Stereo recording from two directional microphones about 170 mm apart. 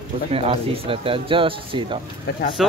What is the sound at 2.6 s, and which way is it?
Speech, centre (ahead or behind).